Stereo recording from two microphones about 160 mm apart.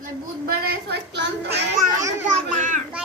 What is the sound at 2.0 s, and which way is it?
Children playing, 20° right (ahead or behind).